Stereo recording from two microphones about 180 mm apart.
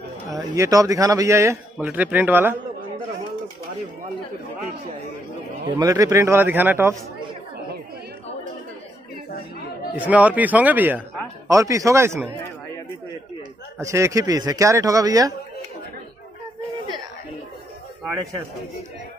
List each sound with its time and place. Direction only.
0.3 s speech: 20° right (ahead or behind)
5.8 s speech: 20° right (ahead or behind)
9.9 s speech: 10° right (ahead or behind)
13.7 s a man's voice: 15° right (ahead or behind)